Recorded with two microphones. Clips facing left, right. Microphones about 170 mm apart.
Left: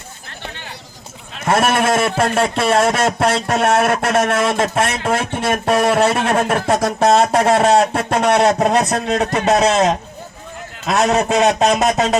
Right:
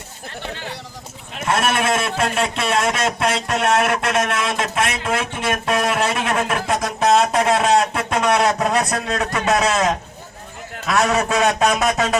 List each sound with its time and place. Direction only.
1.5 s a man's voice: 40° left (ahead or behind)